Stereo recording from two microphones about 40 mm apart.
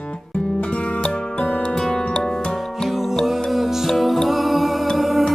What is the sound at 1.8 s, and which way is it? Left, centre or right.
Music, centre.